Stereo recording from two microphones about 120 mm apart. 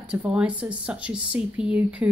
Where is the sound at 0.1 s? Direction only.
10° right (ahead or behind).